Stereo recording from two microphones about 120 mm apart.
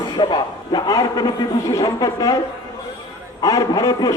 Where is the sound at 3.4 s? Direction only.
30° left (ahead or behind).